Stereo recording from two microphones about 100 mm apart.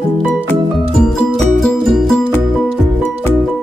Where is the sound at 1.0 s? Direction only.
5° left (ahead or behind).